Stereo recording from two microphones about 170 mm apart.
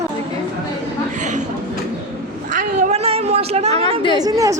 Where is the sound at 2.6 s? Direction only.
45° right (ahead or behind).